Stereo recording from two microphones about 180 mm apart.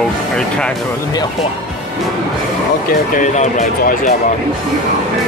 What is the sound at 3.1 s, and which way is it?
Speech, 40° left (ahead or behind).